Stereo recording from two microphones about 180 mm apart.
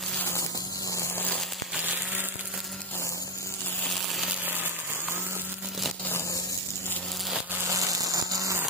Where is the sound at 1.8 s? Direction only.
10° right (ahead or behind).